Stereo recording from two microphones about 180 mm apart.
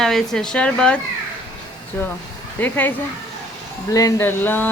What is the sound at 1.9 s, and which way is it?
Speech, 10° left (ahead or behind).